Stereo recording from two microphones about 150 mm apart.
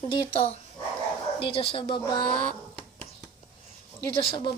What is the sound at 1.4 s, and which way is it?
Speech, 40° left (ahead or behind).